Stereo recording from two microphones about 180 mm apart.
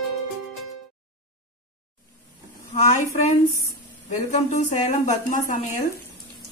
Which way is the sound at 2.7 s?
40° left (ahead or behind).